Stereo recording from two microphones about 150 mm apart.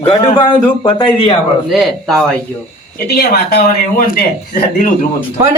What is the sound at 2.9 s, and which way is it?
A man's voice, 85° left.